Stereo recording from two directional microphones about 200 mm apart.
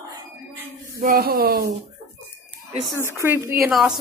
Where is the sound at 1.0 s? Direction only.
50° right (ahead or behind).